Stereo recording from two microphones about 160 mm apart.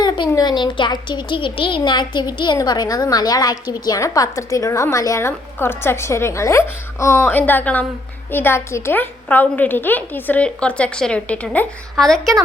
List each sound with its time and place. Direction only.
0.0 s a child's voice: 25° left (ahead or behind); by 12.3 s centre (ahead or behind)